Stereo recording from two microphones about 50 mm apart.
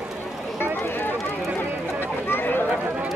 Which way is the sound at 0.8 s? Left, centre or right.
Left.